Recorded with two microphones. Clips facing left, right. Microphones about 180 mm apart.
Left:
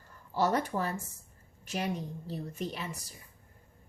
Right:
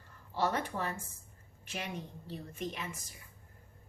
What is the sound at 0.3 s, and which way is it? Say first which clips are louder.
A woman's voice: left 4 dB; 40° left (ahead or behind).